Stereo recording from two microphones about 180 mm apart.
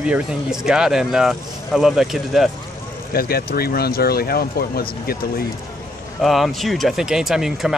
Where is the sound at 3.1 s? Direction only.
55° left (ahead or behind).